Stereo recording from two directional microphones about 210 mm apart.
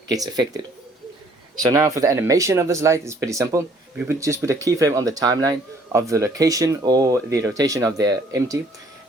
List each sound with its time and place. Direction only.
0.1 s speech: 15° right (ahead or behind)
1.6 s speech: 15° right (ahead or behind)